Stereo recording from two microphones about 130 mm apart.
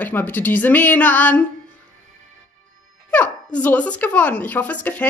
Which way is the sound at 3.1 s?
10° left (ahead or behind).